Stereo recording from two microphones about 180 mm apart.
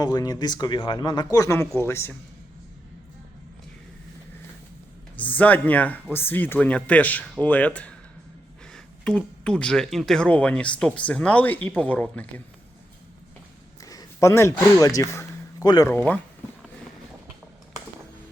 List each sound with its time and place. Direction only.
0.0 s speech: 20° left (ahead or behind)
5.1 s speech: 10° left (ahead or behind)
13.8 s a man's voice: 20° left (ahead or behind)